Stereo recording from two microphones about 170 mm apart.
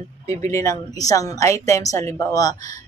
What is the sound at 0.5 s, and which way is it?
Speech, 20° left (ahead or behind).